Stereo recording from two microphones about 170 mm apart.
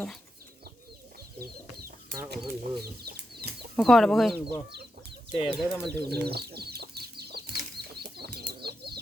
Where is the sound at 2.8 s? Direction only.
70° right (ahead or behind).